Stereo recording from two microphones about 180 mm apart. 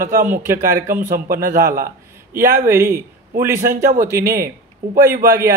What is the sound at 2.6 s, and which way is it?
A man's voice, 15° right (ahead or behind).